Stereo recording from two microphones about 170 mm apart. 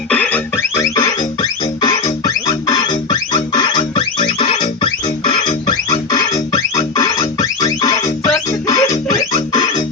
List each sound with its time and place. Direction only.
0.1 s music: 10° left (ahead or behind)